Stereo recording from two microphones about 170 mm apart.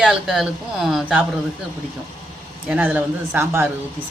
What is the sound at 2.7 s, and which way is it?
Speech, 10° right (ahead or behind).